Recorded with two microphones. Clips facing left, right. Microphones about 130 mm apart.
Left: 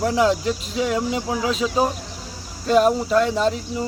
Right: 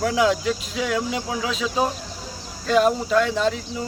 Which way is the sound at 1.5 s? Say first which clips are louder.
Left 2 dB; centre (ahead or behind).